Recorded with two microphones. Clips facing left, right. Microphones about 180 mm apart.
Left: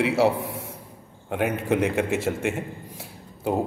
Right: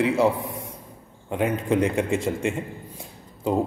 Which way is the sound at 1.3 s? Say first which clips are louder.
Right 1 dB; 65° left (ahead or behind).